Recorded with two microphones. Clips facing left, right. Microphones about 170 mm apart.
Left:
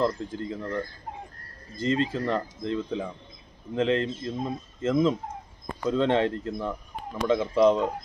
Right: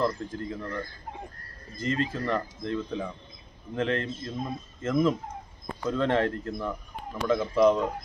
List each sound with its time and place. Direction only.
0.0 s speech: 30° left (ahead or behind)